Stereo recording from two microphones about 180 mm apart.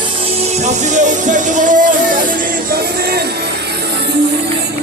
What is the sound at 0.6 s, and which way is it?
Music, 40° right (ahead or behind).